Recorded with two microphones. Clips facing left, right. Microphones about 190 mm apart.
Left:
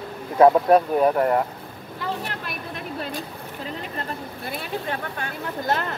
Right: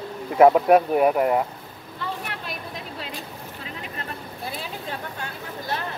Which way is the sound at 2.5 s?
55° left (ahead or behind).